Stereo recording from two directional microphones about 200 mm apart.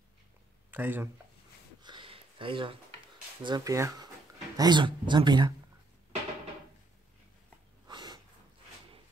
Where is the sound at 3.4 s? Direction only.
20° right (ahead or behind).